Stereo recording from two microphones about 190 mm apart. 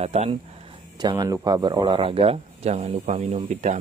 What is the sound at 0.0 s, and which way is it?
Speech, 35° right (ahead or behind).